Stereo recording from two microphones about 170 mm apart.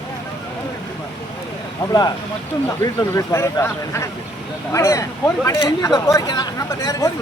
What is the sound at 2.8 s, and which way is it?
Speech, 20° left (ahead or behind).